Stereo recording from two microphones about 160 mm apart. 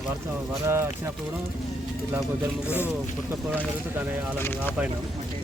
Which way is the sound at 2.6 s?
10° right (ahead or behind).